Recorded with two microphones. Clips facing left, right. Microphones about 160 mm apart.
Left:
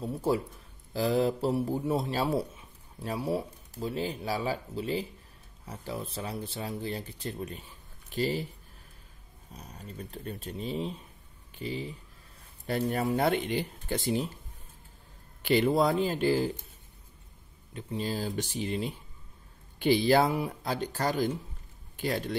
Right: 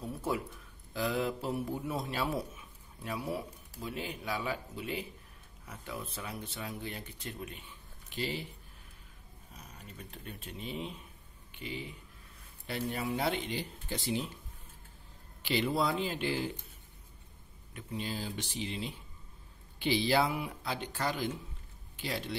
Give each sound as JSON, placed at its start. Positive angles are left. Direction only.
{"t": 0.1, "sound": "a man's voice", "side_deg": 30}
{"t": 9.6, "sound": "speech", "side_deg": 35}
{"t": 15.4, "sound": "speech", "side_deg": 50}
{"t": 17.7, "sound": "a man's voice", "side_deg": 35}